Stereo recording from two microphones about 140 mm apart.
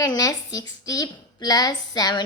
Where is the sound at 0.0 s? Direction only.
25° left (ahead or behind).